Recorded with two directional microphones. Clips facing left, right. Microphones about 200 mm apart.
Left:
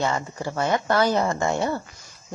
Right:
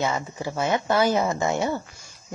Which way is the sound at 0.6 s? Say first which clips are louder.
Left 1 dB; 20° right (ahead or behind).